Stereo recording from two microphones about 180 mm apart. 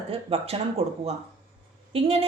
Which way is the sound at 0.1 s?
30° right (ahead or behind).